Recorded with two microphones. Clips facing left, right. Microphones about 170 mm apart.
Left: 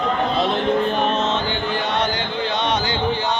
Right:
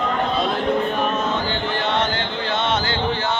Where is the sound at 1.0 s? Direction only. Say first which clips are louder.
Left 1 dB; 25° left (ahead or behind).